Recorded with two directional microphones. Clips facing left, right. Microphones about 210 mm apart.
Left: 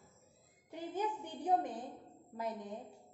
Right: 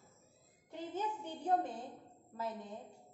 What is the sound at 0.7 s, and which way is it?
A woman's voice, 15° left (ahead or behind).